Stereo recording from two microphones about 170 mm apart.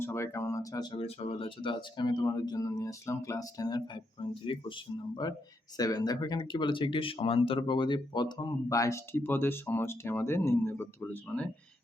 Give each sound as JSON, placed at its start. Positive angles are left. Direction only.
{"t": 0.0, "sound": "speech", "side_deg": 15}